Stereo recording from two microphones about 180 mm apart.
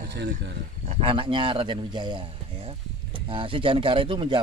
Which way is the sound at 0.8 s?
30° right (ahead or behind).